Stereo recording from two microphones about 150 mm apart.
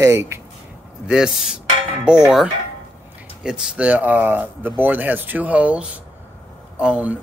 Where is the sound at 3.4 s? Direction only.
5° right (ahead or behind).